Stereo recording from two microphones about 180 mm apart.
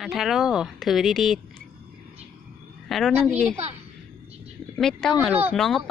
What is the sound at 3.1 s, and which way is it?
Speech, 10° right (ahead or behind).